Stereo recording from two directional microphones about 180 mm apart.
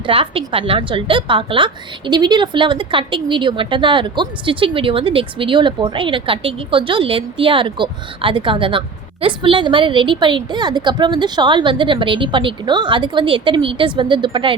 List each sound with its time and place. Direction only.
0.0 s a woman's voice: 30° right (ahead or behind)